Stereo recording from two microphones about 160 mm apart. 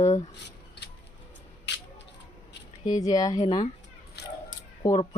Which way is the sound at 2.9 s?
25° left (ahead or behind).